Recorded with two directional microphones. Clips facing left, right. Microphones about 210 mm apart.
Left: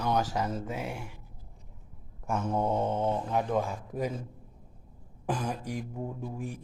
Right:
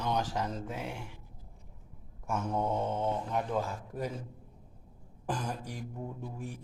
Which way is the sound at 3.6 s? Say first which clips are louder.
Left 4 dB; 15° left (ahead or behind).